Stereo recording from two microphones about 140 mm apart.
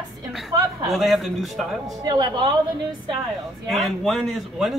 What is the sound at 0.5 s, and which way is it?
Speech, 30° right (ahead or behind).